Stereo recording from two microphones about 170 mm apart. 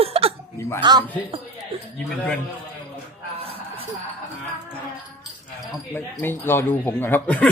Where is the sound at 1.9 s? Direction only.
5° left (ahead or behind).